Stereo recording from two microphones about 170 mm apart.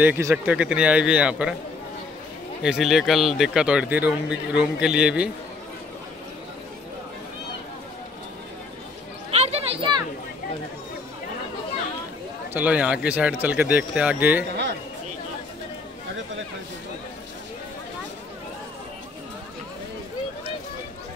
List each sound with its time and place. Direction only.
0.0 s speech: 15° right (ahead or behind)
2.6 s a man's voice: centre (ahead or behind)
9.3 s a sound: 35° right (ahead or behind)
12.5 s speech: 10° right (ahead or behind)